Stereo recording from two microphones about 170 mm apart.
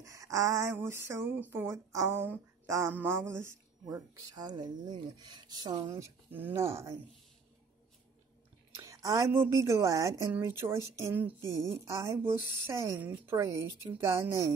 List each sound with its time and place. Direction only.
0.0 s speech: 20° right (ahead or behind)
5.9 s speech: 15° right (ahead or behind)
8.8 s a woman's voice: 20° right (ahead or behind)